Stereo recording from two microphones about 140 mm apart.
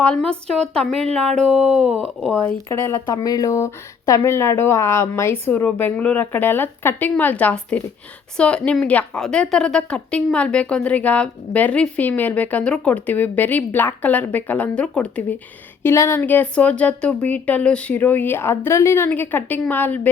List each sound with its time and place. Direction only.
0.0 s speech: 10° left (ahead or behind)
2.4 s speech: 15° left (ahead or behind)